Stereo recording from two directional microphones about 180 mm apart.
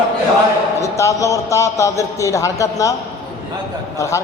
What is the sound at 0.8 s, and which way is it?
A man's voice, 15° left (ahead or behind).